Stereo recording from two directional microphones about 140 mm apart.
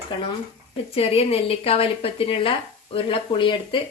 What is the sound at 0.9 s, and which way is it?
A woman's voice, 45° left (ahead or behind).